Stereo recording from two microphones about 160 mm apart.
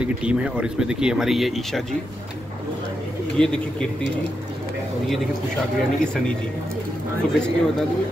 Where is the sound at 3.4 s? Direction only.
5° left (ahead or behind).